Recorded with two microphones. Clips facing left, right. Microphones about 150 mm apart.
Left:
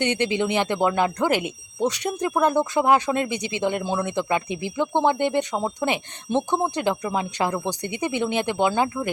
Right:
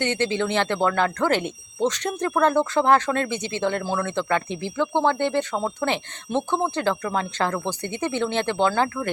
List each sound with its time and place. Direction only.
0.0 s speech: 15° left (ahead or behind)